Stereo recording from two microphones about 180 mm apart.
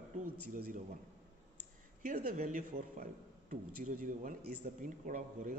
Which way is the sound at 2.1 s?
55° right (ahead or behind).